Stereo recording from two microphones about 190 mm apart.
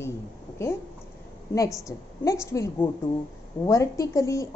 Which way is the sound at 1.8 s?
15° left (ahead or behind).